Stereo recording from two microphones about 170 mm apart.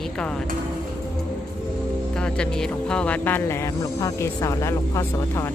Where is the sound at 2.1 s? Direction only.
5° left (ahead or behind).